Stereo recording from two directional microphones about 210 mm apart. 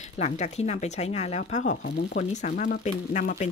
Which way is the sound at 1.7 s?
50° left (ahead or behind).